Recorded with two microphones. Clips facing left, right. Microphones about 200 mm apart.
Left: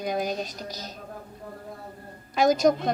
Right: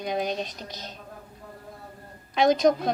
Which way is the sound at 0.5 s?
40° left (ahead or behind).